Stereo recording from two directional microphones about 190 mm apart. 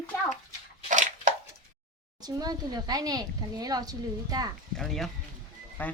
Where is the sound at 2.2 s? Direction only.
20° right (ahead or behind).